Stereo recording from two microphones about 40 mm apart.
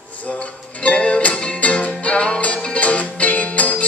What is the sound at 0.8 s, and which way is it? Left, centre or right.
Music, left.